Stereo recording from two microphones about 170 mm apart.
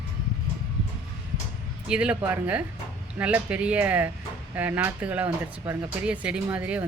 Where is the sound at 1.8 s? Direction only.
5° right (ahead or behind).